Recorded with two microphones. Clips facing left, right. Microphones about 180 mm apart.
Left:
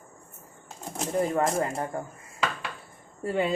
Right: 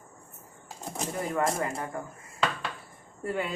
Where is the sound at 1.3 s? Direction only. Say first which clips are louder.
Left 3 dB; 30° left (ahead or behind).